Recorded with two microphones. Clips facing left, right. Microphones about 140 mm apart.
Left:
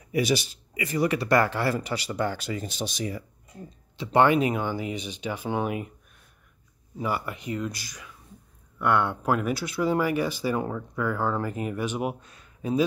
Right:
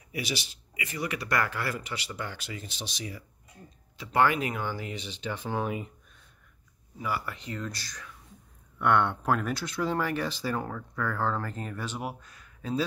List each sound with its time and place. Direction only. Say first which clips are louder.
0.1 s speech: left 10 dB; 45° left (ahead or behind)
3.9 s speech: left 5 dB; 25° left (ahead or behind); by 5.9 s 10° left (ahead or behind)
7.0 s speech: left 4 dB; 25° left (ahead or behind)